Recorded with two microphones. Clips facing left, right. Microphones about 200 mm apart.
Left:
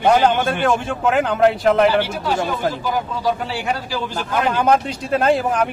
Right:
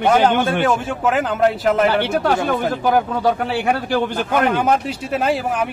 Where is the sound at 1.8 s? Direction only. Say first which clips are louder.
Right 1 dB; 55° right (ahead or behind).